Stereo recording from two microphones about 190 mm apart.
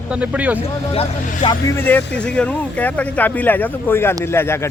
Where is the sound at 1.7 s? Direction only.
10° left (ahead or behind).